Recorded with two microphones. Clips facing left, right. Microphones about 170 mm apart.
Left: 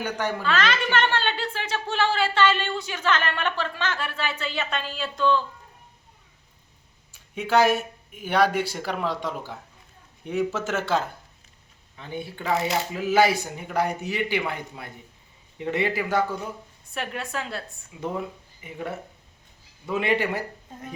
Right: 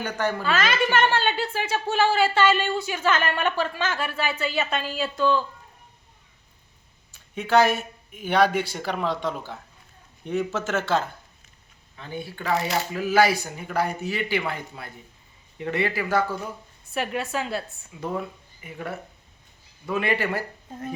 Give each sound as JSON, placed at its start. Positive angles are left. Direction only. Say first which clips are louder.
{"t": 0.0, "sound": "speech", "louder": "right 1 dB", "side_deg": 10}
{"t": 0.4, "sound": "speech", "louder": "even", "side_deg": -10}
{"t": 7.1, "sound": "speech", "louder": "right 2 dB", "side_deg": 10}
{"t": 15.5, "sound": "speech", "louder": "left 1 dB", "side_deg": 20}
{"t": 16.9, "sound": "a woman's voice", "louder": "right 4 dB", "side_deg": -5}
{"t": 18.0, "sound": "speech", "louder": "even", "side_deg": 20}